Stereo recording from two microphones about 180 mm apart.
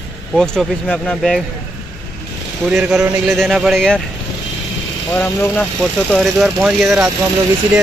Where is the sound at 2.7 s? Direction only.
5° right (ahead or behind).